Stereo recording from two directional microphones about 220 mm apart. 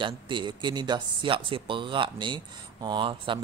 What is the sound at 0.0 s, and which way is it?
Speech, 20° right (ahead or behind).